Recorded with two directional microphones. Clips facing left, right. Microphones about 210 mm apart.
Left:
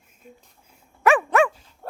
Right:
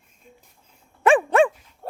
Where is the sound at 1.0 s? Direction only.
30° right (ahead or behind).